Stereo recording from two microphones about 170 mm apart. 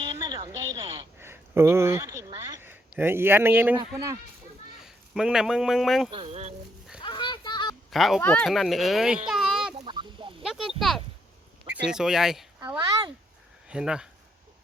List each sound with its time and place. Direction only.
0.0 s a sound: 30° right (ahead or behind); by 3.8 s 10° right (ahead or behind)
3.8 s a man's voice: 20° right (ahead or behind)
4.8 s a man's voice: 5° right (ahead or behind)
6.1 s speech: 35° right (ahead or behind)
7.0 s a sound: 25° left (ahead or behind)
7.9 s speech: centre (ahead or behind)
8.2 s speech: 10° left (ahead or behind)
8.4 s speech: centre (ahead or behind)
9.7 s fowl: 30° right (ahead or behind)
10.4 s speech: centre (ahead or behind)
12.6 s speech: 15° right (ahead or behind)
13.7 s speech: 5° right (ahead or behind)